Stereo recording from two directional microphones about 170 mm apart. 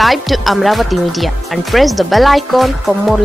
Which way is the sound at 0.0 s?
Centre (ahead or behind).